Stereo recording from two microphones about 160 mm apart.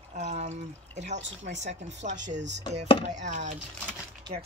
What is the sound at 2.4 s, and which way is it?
Speech, 90° right.